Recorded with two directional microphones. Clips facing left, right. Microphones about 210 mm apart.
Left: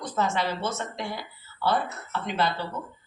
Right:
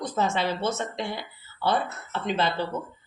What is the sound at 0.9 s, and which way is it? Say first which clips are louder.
Speech: right 2 dB; 25° right (ahead or behind).